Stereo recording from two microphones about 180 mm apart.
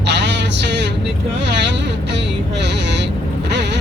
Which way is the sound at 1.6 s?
75° right (ahead or behind).